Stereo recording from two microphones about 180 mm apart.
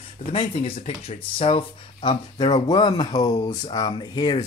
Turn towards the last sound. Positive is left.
turn(degrees=25)  # may be behind; listen again after turning